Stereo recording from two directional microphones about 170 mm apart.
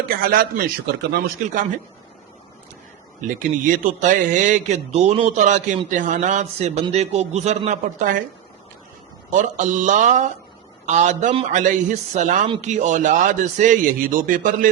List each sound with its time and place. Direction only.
0.0 s speech: 60° right (ahead or behind)
3.2 s a man's voice: 50° right (ahead or behind)
9.3 s a man's voice: 45° right (ahead or behind)